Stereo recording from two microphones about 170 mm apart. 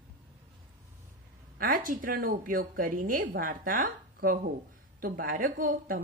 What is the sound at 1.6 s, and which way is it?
A woman's voice, 55° right (ahead or behind).